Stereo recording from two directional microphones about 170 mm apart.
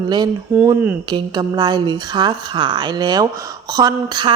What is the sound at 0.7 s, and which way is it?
Speech, 10° right (ahead or behind).